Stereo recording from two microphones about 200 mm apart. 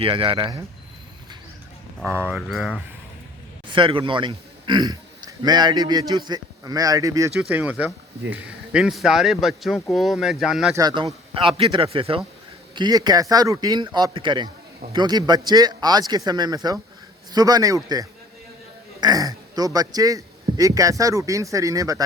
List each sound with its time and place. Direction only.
0.0 s speech: 25° right (ahead or behind)
2.0 s speech: 10° right (ahead or behind)
2.3 s speech: centre (ahead or behind)
3.7 s a man's voice: 25° right (ahead or behind)
7.3 s speech: 5° right (ahead or behind)
10.8 s speech: 20° right (ahead or behind)